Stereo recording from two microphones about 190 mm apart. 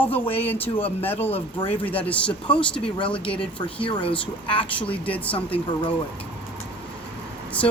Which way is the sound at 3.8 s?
30° left (ahead or behind).